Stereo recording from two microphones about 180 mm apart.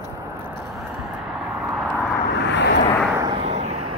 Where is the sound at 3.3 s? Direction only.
35° right (ahead or behind).